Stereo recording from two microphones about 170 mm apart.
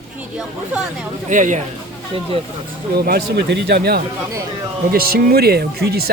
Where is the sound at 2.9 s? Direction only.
70° right (ahead or behind).